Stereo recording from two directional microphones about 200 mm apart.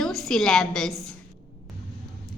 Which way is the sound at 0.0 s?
Centre (ahead or behind).